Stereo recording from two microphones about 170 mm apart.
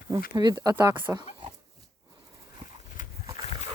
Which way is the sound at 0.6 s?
20° right (ahead or behind).